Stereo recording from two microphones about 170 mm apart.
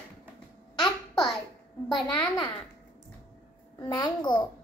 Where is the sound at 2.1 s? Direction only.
25° left (ahead or behind).